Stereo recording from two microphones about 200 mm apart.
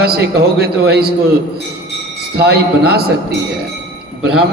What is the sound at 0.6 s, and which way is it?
Speech, 55° right (ahead or behind).